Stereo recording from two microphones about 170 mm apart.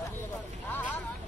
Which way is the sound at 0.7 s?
10° left (ahead or behind).